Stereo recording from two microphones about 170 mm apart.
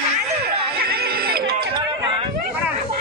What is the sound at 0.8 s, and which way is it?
Music, 65° right (ahead or behind).